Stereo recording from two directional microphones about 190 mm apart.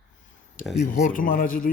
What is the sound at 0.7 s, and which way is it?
Speech, 40° left (ahead or behind).